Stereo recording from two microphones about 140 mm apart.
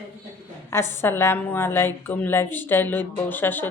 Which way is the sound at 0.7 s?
15° left (ahead or behind).